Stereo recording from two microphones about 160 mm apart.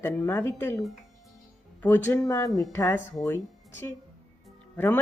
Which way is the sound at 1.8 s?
10° left (ahead or behind).